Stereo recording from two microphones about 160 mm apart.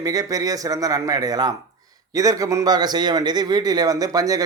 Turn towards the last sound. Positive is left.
turn(degrees=-20)  # may be behind; listen again after turning